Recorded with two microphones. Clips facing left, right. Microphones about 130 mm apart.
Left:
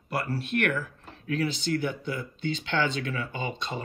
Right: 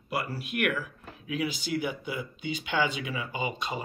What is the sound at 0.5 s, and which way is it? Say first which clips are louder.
Speech: left 2 dB; 55° left (ahead or behind).